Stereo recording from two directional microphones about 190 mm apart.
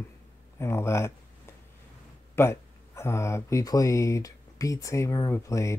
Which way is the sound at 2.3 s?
15° left (ahead or behind).